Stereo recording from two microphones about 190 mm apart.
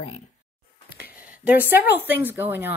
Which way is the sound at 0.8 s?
55° left (ahead or behind).